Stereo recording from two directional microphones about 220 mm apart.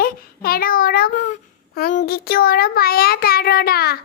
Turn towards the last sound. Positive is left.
turn(degrees=45)  # may be behind; listen again after turning